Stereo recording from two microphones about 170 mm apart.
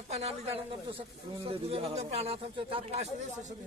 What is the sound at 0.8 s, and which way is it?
Speech, 30° right (ahead or behind).